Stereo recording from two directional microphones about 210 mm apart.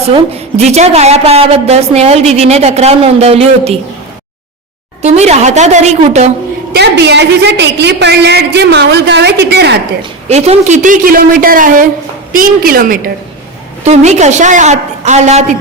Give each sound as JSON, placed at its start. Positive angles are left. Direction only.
{"t": 0.1, "sound": "a woman's voice", "side_deg": -30}
{"t": 5.0, "sound": "a woman's voice", "side_deg": -30}
{"t": 6.7, "sound": "a woman's voice", "side_deg": -55}
{"t": 10.0, "sound": "a woman's voice", "side_deg": -30}